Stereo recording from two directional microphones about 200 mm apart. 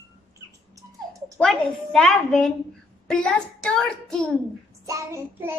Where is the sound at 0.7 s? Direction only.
15° right (ahead or behind).